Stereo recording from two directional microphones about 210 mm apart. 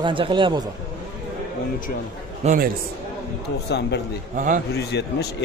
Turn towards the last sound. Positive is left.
turn(degrees=50)  # may be behind; listen again after turning